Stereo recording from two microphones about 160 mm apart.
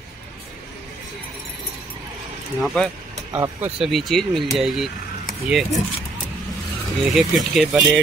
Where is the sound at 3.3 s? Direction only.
20° right (ahead or behind).